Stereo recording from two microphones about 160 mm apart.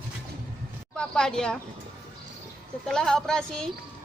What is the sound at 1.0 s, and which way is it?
Speech, 5° left (ahead or behind).